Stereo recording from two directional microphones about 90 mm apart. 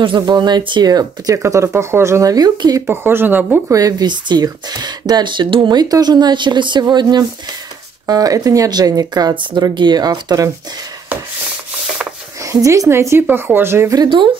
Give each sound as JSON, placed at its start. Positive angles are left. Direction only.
{"t": 0.0, "sound": "speech", "side_deg": -60}
{"t": 1.3, "sound": "a woman's voice", "side_deg": -35}
{"t": 2.3, "sound": "speech", "side_deg": -50}
{"t": 2.9, "sound": "speech", "side_deg": -25}
{"t": 3.7, "sound": "speech", "side_deg": -45}
{"t": 8.1, "sound": "speech", "side_deg": -40}
{"t": 9.3, "sound": "speech", "side_deg": -65}
{"t": 12.4, "sound": "a woman's voice", "side_deg": -35}
{"t": 14.0, "sound": "speech", "side_deg": -65}